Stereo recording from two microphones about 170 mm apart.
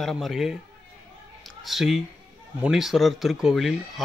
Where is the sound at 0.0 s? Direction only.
Centre (ahead or behind).